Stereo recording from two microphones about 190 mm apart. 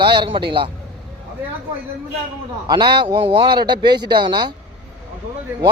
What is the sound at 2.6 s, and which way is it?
A man's voice, 25° right (ahead or behind).